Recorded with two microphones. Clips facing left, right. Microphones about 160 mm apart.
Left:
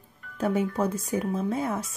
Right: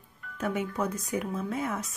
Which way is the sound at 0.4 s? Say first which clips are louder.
Left 5 dB; 30° left (ahead or behind).